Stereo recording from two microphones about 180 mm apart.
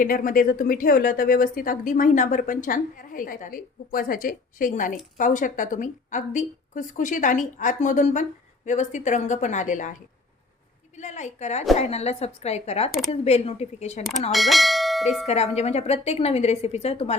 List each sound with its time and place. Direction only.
0.0 s a woman's voice: 50° left (ahead or behind)
10.9 s a woman's voice: 40° left (ahead or behind)
14.3 s speech: centre (ahead or behind)
15.3 s a woman's voice: 35° left (ahead or behind)